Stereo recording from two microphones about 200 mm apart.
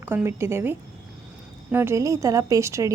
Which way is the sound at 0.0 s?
10° right (ahead or behind).